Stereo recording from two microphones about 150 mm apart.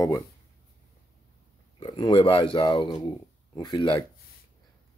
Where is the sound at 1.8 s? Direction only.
35° left (ahead or behind).